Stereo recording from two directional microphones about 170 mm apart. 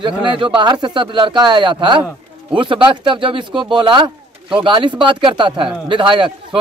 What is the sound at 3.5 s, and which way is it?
Speech, 5° right (ahead or behind).